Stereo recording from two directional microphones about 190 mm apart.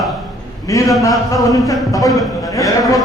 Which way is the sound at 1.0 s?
15° left (ahead or behind).